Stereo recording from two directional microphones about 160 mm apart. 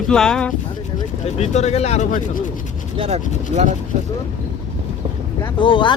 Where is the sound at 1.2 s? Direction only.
45° left (ahead or behind).